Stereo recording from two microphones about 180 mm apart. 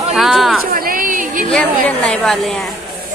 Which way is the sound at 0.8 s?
50° right (ahead or behind).